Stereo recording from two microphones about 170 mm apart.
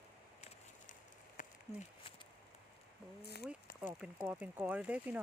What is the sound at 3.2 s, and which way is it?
Speech, 70° left (ahead or behind).